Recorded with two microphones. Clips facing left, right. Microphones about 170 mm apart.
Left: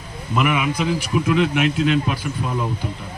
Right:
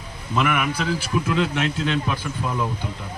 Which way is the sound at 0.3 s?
15° left (ahead or behind).